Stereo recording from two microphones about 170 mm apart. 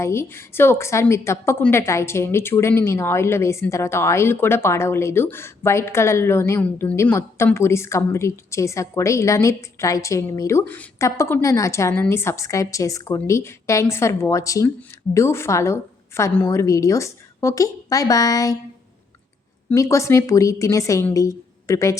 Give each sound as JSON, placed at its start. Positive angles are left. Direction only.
{"t": 0.0, "sound": "a woman's voice", "side_deg": 15}
{"t": 19.7, "sound": "a woman's voice", "side_deg": 20}